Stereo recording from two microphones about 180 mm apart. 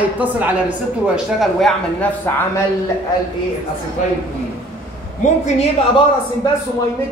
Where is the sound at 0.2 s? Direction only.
10° right (ahead or behind).